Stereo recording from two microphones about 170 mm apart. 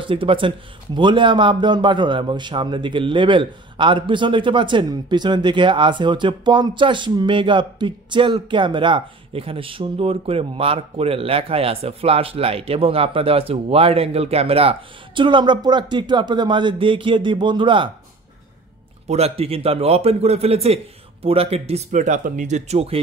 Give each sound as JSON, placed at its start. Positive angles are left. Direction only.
{"t": 0.0, "sound": "speech", "side_deg": -30}
{"t": 19.0, "sound": "a man's voice", "side_deg": -40}